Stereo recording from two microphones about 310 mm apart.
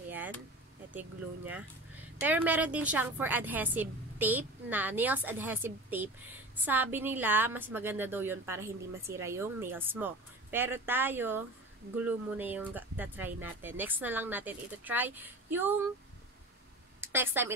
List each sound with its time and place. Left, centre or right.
0.1 s a sound: centre
0.9 s a woman's voice: centre
17.0 s a woman's voice: centre